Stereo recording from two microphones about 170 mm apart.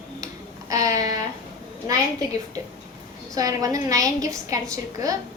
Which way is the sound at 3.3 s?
20° right (ahead or behind).